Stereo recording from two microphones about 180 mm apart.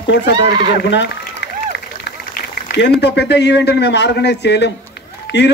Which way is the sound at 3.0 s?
70° left (ahead or behind).